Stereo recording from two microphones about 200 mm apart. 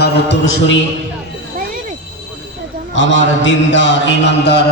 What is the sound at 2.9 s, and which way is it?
A man's voice, 65° left (ahead or behind).